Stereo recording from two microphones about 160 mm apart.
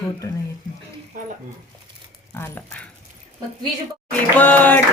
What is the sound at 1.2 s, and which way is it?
Speech, 55° right (ahead or behind).